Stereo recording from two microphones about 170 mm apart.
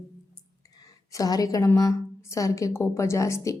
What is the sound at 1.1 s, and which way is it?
A woman's voice, 20° left (ahead or behind).